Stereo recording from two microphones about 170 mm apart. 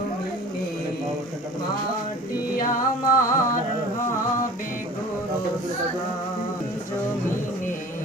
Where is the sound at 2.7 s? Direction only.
50° left (ahead or behind).